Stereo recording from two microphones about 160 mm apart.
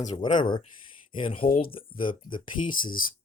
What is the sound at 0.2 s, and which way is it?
Speech, 30° left (ahead or behind).